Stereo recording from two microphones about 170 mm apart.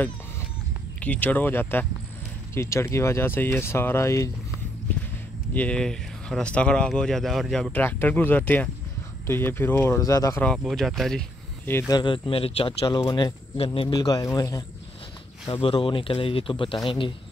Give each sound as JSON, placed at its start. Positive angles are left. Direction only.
{"t": 1.0, "sound": "speech", "side_deg": 10}
{"t": 5.5, "sound": "speech", "side_deg": 10}
{"t": 10.4, "sound": "speech", "side_deg": 5}
{"t": 11.9, "sound": "speech", "side_deg": 30}
{"t": 15.4, "sound": "speech", "side_deg": 30}